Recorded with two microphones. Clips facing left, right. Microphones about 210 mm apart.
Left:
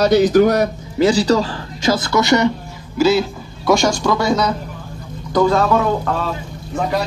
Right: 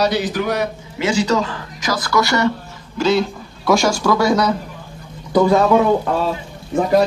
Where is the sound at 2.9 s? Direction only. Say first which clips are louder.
Left 2 dB; 5° left (ahead or behind).